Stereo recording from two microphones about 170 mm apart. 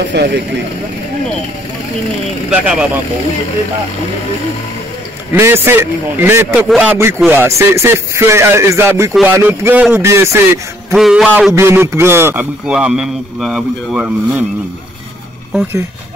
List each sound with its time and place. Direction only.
0.1 s speech: 70° right (ahead or behind)
2.5 s a man's voice: 10° right (ahead or behind)
5.3 s a man's voice: 15° right (ahead or behind)
11.0 s a man's voice: centre (ahead or behind)
11.5 s a man's voice: 15° right (ahead or behind)